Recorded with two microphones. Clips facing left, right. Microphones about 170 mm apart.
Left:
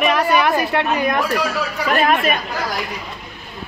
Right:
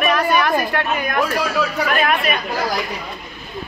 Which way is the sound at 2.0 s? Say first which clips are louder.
Left 4 dB; 40° left (ahead or behind).